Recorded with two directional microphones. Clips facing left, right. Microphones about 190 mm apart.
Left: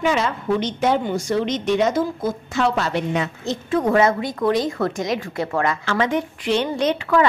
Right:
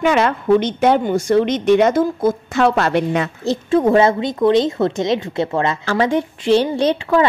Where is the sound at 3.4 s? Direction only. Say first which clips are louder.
Right 7 dB; 25° right (ahead or behind).